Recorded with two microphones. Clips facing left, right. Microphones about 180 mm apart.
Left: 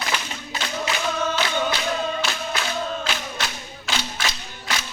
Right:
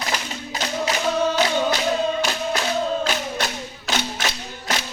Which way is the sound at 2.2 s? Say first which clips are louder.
Right 4 dB; 35° right (ahead or behind).